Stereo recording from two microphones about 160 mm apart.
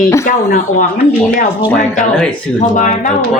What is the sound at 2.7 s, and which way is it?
Speech, 55° left (ahead or behind).